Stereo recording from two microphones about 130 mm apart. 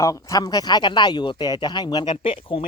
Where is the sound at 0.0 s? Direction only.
25° left (ahead or behind).